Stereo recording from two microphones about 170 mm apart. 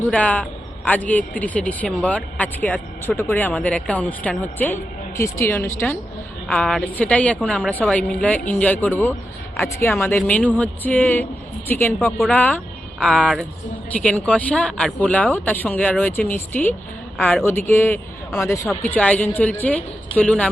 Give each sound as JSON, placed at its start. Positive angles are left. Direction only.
{"t": 0.1, "sound": "speech", "side_deg": 10}
{"t": 12.1, "sound": "speech", "side_deg": 0}
{"t": 12.4, "sound": "speech", "side_deg": 10}